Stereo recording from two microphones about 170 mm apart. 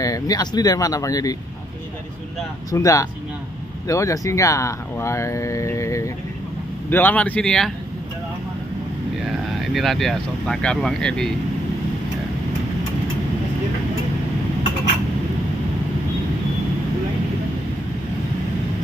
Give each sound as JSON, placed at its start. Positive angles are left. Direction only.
{"t": 0.0, "sound": "speech", "side_deg": 20}
{"t": 2.7, "sound": "speech", "side_deg": 20}
{"t": 9.7, "sound": "speech", "side_deg": 0}